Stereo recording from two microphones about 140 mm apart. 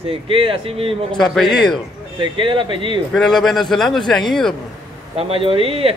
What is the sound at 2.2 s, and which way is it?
Speech, 35° right (ahead or behind).